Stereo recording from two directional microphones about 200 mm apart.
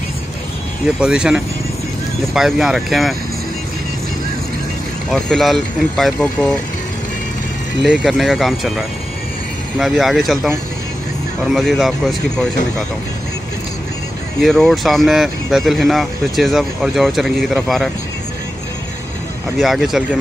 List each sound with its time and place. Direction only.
0.8 s speech: 5° right (ahead or behind)
5.1 s speech: centre (ahead or behind)
7.8 s speech: centre (ahead or behind)
14.4 s speech: centre (ahead or behind)
19.6 s speech: centre (ahead or behind)